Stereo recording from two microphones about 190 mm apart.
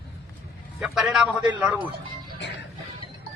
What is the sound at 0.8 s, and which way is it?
Speech, centre (ahead or behind).